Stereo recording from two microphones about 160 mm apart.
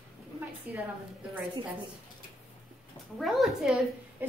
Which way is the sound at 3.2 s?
Centre (ahead or behind).